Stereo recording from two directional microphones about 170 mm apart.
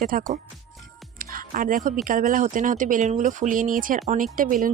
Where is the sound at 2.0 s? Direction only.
50° right (ahead or behind).